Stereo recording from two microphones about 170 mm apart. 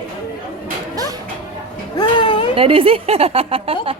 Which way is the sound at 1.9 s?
30° left (ahead or behind).